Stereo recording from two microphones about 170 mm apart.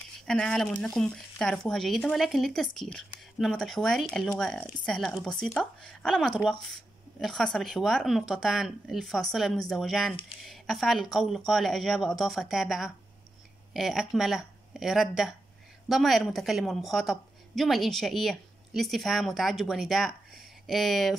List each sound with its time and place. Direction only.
0.2 s a woman's voice: 5° left (ahead or behind)